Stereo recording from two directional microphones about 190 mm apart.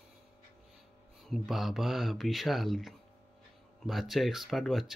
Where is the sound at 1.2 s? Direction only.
Centre (ahead or behind).